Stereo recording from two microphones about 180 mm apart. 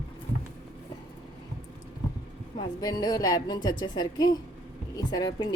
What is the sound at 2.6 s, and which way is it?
A woman's voice, 20° left (ahead or behind).